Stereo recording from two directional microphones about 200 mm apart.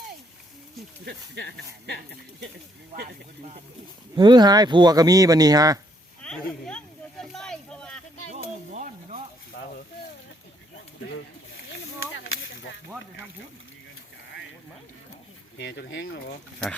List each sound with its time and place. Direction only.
1.0 s speech: 55° right (ahead or behind)
4.1 s speech: 20° right (ahead or behind)
6.2 s a sound: 5° left (ahead or behind)
8.3 s a sound: 35° right (ahead or behind)
11.1 s speech: 55° left (ahead or behind)
12.1 s whip: 70° left (ahead or behind)
15.5 s speech: 60° left (ahead or behind)